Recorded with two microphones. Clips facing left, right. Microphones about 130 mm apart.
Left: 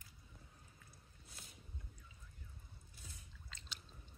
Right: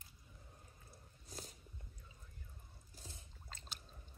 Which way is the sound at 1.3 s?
40° right (ahead or behind).